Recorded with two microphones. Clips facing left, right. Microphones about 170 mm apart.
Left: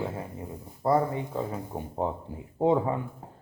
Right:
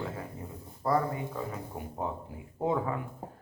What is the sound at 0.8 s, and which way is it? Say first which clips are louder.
Speech: left 4 dB; 25° left (ahead or behind).